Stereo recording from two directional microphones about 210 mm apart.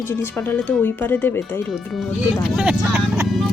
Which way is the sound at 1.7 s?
Centre (ahead or behind).